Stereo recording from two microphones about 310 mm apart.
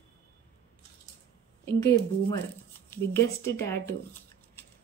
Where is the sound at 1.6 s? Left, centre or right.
Centre.